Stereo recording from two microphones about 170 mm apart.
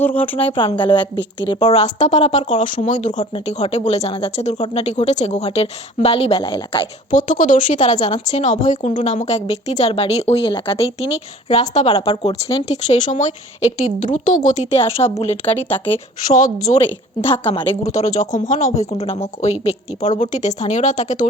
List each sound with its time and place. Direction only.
0.0 s a woman's voice: 10° left (ahead or behind)
0.3 s speech: 30° left (ahead or behind)
7.1 s speech: 50° left (ahead or behind); by 16.0 s 30° left (ahead or behind)
16.2 s speech: 45° left (ahead or behind)
17.2 s speech: 35° left (ahead or behind)